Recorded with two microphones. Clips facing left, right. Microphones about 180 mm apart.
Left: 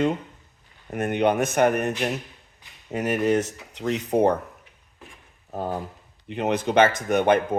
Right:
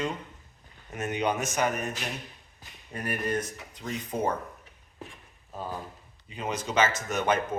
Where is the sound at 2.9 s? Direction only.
90° left; by 4.3 s 70° left (ahead or behind).